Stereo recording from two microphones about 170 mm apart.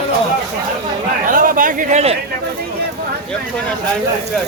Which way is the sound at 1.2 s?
55° right (ahead or behind).